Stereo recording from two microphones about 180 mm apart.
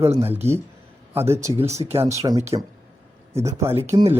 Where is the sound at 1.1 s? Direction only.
15° right (ahead or behind).